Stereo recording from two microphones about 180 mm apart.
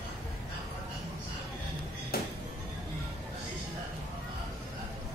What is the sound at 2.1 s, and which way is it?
Music, 60° left (ahead or behind).